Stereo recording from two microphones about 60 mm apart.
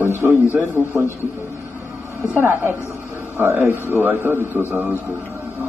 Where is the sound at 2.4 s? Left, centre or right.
Right.